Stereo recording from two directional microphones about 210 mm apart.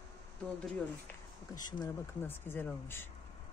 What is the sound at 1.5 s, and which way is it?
Speech, 20° left (ahead or behind).